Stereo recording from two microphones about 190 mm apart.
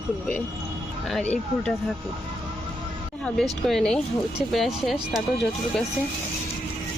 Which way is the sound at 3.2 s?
5° left (ahead or behind).